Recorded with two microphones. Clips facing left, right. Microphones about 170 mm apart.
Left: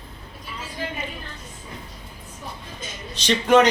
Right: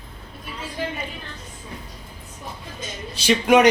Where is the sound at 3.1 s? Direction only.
10° right (ahead or behind).